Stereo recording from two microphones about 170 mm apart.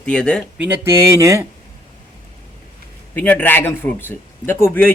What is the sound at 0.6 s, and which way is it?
Speech, 15° right (ahead or behind).